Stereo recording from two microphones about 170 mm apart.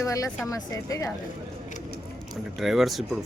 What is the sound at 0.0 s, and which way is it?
Speech, 20° left (ahead or behind).